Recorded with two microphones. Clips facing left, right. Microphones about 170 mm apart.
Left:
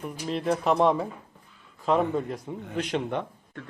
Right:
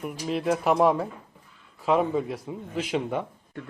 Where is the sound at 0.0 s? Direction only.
5° right (ahead or behind).